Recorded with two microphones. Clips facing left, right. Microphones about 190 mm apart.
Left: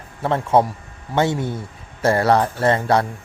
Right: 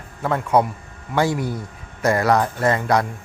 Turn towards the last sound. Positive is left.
turn(degrees=30)  # may be behind; listen again after turning